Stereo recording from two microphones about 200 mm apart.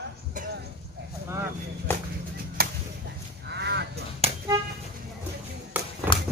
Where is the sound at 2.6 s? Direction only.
50° right (ahead or behind).